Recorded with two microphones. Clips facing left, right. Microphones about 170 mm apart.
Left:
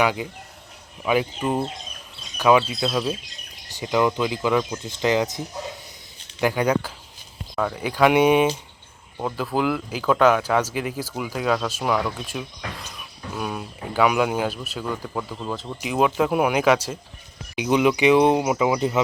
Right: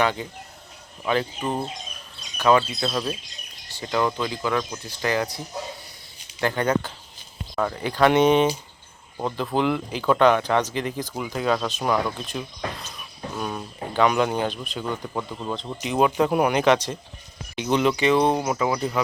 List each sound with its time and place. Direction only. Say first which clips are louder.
0.0 s speech: left 1 dB; 10° left (ahead or behind)
2.4 s speech: left 1 dB; 10° left (ahead or behind)
3.8 s speech: left 3 dB; 15° left (ahead or behind)
6.4 s speech: left 2 dB; 10° left (ahead or behind)